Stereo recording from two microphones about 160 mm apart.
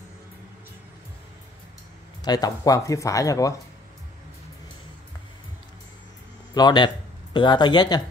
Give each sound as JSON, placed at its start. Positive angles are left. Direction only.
{"t": 2.2, "sound": "speech", "side_deg": 25}
{"t": 6.5, "sound": "speech", "side_deg": 25}